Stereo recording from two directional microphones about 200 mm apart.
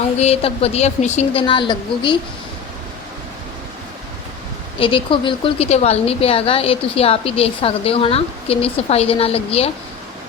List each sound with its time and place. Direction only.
0.2 s a woman's voice: 30° left (ahead or behind)
4.8 s a woman's voice: 25° left (ahead or behind)